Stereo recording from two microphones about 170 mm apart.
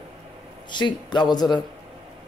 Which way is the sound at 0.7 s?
25° left (ahead or behind).